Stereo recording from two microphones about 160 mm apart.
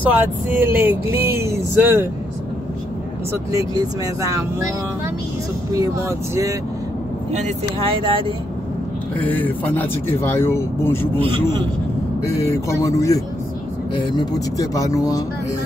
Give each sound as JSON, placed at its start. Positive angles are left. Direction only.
{"t": 0.1, "sound": "speech", "side_deg": -10}
{"t": 3.5, "sound": "speech", "side_deg": -20}
{"t": 5.7, "sound": "speech", "side_deg": -20}
{"t": 7.3, "sound": "speech", "side_deg": -40}
{"t": 9.2, "sound": "speech", "side_deg": 10}
{"t": 11.1, "sound": "speech", "side_deg": -35}
{"t": 12.4, "sound": "speech", "side_deg": 20}